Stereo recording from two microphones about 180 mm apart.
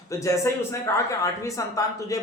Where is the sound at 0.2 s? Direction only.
15° left (ahead or behind).